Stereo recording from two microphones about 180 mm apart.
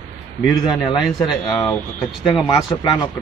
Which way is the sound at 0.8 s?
25° left (ahead or behind).